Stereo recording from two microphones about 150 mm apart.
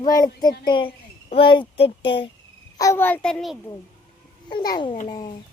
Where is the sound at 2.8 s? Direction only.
15° left (ahead or behind).